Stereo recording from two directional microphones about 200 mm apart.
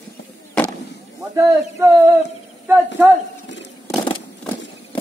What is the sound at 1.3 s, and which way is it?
Speech, 15° right (ahead or behind).